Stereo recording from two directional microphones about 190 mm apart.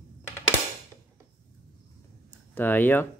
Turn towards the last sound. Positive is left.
turn(degrees=10)  # may be behind; listen again after turning